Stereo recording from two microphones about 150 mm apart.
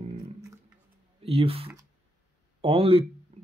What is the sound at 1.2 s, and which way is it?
Speech, 40° right (ahead or behind).